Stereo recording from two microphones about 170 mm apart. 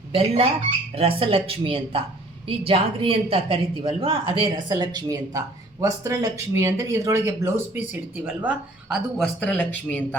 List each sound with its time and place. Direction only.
0.1 s a woman's voice: 35° right (ahead or behind); by 10.2 s 10° left (ahead or behind)